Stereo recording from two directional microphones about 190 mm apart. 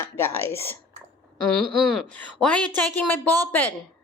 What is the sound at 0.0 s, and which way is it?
Speech, 15° left (ahead or behind).